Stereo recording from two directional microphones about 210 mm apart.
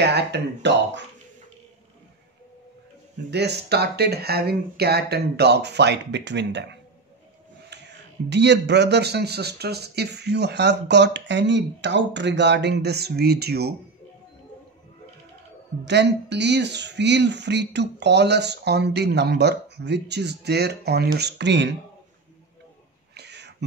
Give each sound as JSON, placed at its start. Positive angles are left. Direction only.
{"t": 0.0, "sound": "speech", "side_deg": -55}
{"t": 3.3, "sound": "speech", "side_deg": -55}
{"t": 7.7, "sound": "speech", "side_deg": -55}
{"t": 15.8, "sound": "speech", "side_deg": -55}
{"t": 23.1, "sound": "a sound", "side_deg": -55}